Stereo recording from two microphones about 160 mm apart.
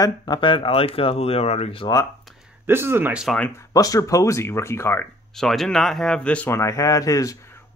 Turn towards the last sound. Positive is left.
turn(degrees=20)  # may be behind; listen again after turning